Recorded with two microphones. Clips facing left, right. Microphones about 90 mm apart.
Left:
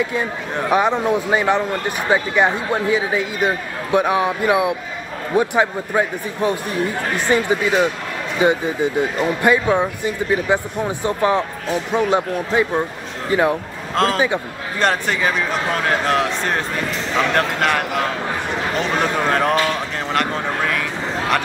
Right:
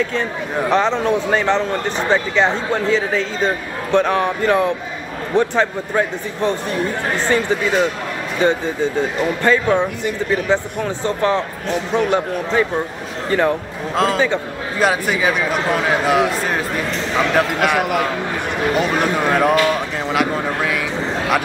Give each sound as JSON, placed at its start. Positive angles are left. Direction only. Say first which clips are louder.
{"t": 0.0, "sound": "speech", "louder": "right 1 dB", "side_deg": 15}
{"t": 13.9, "sound": "a man's voice", "louder": "right 1 dB", "side_deg": 0}